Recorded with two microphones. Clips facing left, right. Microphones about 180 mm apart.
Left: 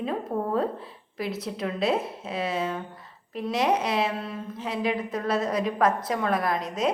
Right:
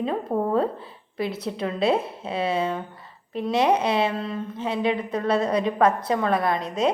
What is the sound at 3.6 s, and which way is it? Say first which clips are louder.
A woman's voice: right 3 dB; centre (ahead or behind).